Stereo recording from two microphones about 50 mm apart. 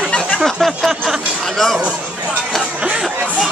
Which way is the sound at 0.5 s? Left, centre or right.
Centre.